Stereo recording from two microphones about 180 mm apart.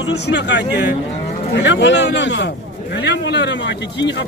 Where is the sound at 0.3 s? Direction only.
75° left (ahead or behind).